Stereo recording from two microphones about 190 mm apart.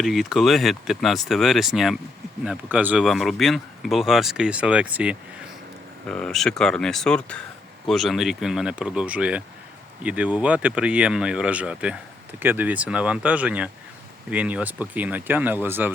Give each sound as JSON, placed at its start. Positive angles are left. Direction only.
{"t": 0.0, "sound": "speech", "side_deg": 0}
{"t": 6.1, "sound": "speech", "side_deg": 5}